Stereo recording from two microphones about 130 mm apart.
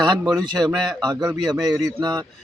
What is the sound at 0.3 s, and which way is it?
Speech, 30° right (ahead or behind).